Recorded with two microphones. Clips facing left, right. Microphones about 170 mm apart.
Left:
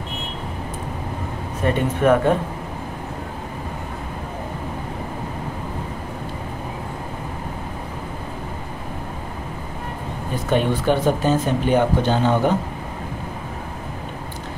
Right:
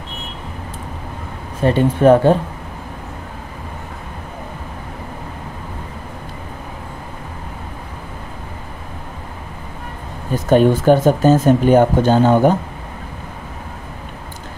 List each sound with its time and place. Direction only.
1.6 s speech: 30° right (ahead or behind)
10.5 s speech: 45° right (ahead or behind)